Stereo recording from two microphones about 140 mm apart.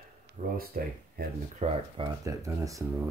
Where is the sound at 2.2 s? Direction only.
25° right (ahead or behind).